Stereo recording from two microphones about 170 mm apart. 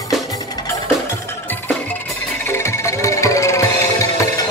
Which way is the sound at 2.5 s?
15° left (ahead or behind).